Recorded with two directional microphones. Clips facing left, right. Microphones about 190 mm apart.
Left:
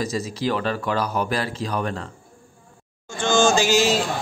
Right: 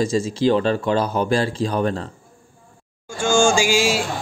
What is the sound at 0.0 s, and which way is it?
Speech, 25° right (ahead or behind).